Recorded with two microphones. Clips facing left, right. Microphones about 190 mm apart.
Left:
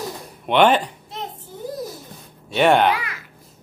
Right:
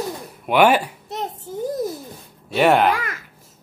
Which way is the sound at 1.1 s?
45° right (ahead or behind).